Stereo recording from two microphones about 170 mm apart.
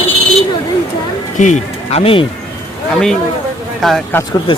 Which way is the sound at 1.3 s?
45° left (ahead or behind).